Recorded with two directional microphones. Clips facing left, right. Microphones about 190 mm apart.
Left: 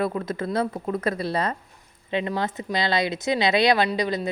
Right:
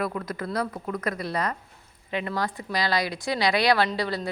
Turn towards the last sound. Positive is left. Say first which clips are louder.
# left 2 dB
turn(degrees=20)  # may be behind; listen again after turning